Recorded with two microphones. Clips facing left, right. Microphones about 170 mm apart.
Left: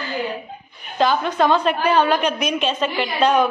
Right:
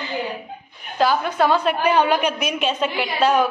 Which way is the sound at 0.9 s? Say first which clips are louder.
Left 1 dB; 5° right (ahead or behind).